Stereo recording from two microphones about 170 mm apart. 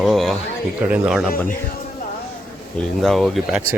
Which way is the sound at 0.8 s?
10° right (ahead or behind).